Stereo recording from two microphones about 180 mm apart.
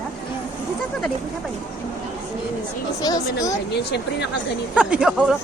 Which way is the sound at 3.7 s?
70° left (ahead or behind).